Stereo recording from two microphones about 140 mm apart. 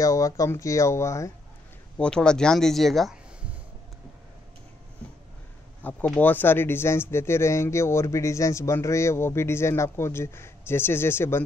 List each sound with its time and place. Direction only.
0.0 s speech: 25° left (ahead or behind)
2.0 s speech: 5° left (ahead or behind)
5.8 s speech: 10° left (ahead or behind)